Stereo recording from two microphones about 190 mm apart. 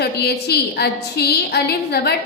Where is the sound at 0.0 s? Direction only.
60° left (ahead or behind).